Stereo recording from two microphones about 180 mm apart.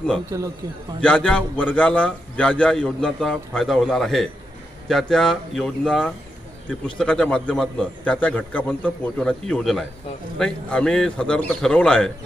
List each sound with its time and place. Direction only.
0.3 s speech: 15° right (ahead or behind)
1.0 s a man's voice: 5° left (ahead or behind)